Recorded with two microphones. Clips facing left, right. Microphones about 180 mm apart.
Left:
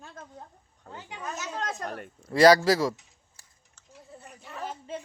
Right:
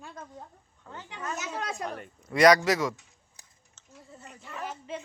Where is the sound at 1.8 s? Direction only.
50° left (ahead or behind).